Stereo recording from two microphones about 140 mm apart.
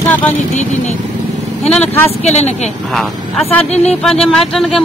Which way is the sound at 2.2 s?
55° left (ahead or behind).